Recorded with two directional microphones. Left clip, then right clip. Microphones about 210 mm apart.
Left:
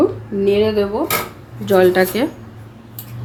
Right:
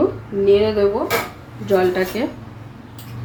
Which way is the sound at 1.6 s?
50° left (ahead or behind).